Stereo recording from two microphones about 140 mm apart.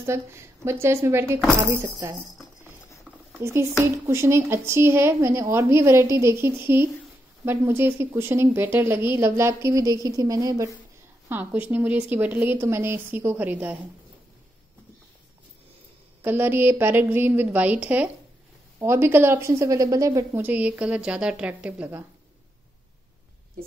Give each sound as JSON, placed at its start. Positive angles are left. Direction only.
{"t": 0.0, "sound": "a woman's voice", "side_deg": -20}
{"t": 3.4, "sound": "a woman's voice", "side_deg": -20}
{"t": 11.2, "sound": "a woman's voice", "side_deg": -10}
{"t": 16.2, "sound": "a woman's voice", "side_deg": -15}
{"t": 20.4, "sound": "a woman's voice", "side_deg": -10}